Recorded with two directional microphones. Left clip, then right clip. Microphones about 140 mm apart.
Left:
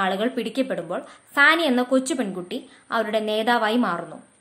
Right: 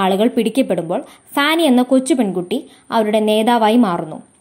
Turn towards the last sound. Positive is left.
turn(degrees=-35)  # may be behind; listen again after turning